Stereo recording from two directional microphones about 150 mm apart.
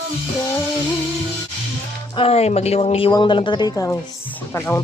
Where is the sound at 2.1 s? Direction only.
40° left (ahead or behind).